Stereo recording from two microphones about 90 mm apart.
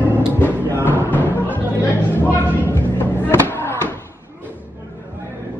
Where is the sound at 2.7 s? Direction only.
25° left (ahead or behind).